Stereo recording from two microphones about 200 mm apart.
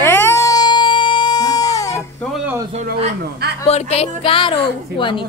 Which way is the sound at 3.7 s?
30° left (ahead or behind).